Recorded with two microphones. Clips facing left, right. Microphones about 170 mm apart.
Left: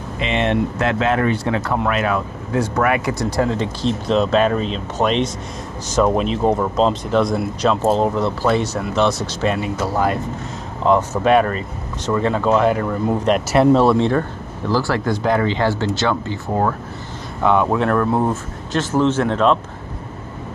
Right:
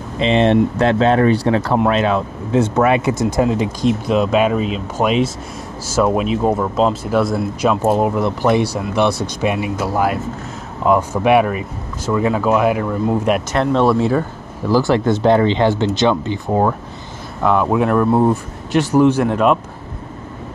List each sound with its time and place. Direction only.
0.2 s speech: 30° right (ahead or behind); by 14.2 s 5° right (ahead or behind)
14.7 s speech: 20° right (ahead or behind)
17.4 s speech: centre (ahead or behind)